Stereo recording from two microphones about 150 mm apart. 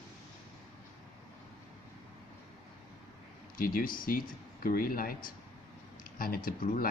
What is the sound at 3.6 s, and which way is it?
Speech, 70° left (ahead or behind).